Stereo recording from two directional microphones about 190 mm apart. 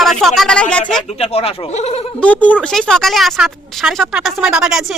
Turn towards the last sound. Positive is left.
turn(degrees=-5)  # may be behind; listen again after turning